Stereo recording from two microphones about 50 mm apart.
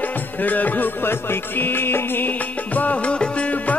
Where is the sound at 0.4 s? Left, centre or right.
Left.